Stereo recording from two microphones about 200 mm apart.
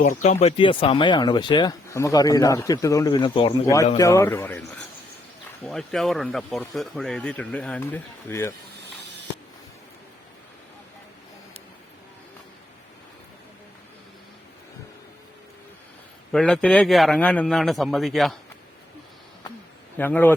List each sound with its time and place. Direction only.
0.0 s speech: 35° left (ahead or behind); by 8.5 s 10° left (ahead or behind)
16.3 s speech: 5° left (ahead or behind)
20.0 s speech: 10° left (ahead or behind)